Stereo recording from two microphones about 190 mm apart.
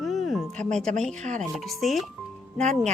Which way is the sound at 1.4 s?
Centre (ahead or behind).